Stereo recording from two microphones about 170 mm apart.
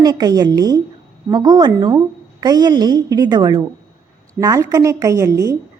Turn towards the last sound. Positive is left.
turn(degrees=-20)  # may be behind; listen again after turning